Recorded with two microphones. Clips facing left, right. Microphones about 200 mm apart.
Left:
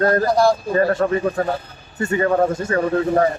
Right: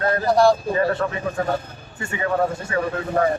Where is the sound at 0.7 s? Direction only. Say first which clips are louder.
Left 4 dB; 45° left (ahead or behind).